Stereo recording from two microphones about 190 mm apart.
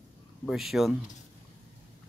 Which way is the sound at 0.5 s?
Centre (ahead or behind).